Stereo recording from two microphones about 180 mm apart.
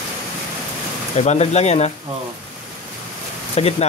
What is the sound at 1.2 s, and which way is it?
Speech, 35° left (ahead or behind).